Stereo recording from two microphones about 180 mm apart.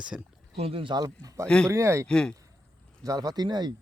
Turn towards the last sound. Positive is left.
turn(degrees=-25)  # may be behind; listen again after turning